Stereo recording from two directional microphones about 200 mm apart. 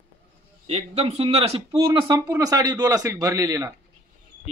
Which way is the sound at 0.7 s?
30° right (ahead or behind).